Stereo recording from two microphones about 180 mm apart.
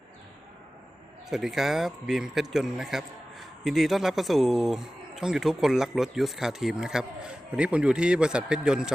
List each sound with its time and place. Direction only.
1.3 s a man's voice: centre (ahead or behind)